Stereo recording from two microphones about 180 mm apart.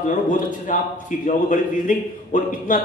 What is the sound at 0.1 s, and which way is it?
A man's voice, 45° left (ahead or behind).